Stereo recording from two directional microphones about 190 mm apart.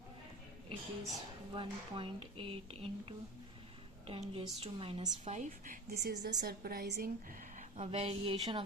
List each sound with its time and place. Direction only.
1.5 s a woman's voice: 25° right (ahead or behind); by 7.1 s 60° right (ahead or behind)
7.8 s speech: 30° right (ahead or behind)